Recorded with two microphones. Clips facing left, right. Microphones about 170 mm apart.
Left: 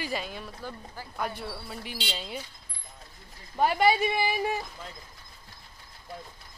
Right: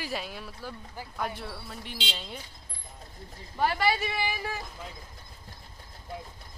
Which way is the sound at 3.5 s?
20° left (ahead or behind).